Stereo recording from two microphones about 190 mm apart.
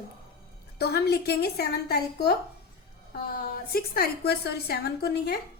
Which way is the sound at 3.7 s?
55° left (ahead or behind).